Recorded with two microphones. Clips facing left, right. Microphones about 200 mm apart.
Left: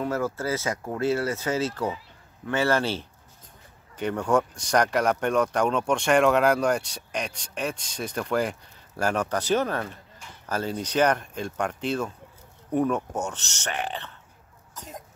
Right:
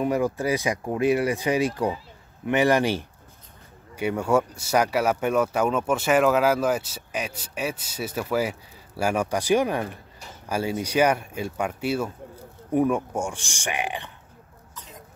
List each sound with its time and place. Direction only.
0.0 s speech: 15° right (ahead or behind)
14.7 s throat clearing: 45° left (ahead or behind)